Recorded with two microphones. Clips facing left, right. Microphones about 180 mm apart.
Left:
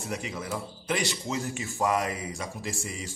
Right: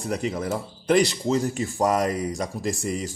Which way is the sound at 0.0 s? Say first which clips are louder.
Right 8 dB; 40° right (ahead or behind).